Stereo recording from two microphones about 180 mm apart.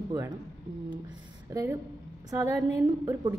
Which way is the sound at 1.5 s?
15° right (ahead or behind).